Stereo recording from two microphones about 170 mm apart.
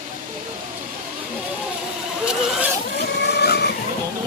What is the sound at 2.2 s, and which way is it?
Rodents, 5° right (ahead or behind).